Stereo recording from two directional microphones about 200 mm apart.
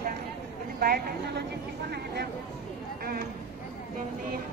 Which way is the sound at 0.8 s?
50° right (ahead or behind).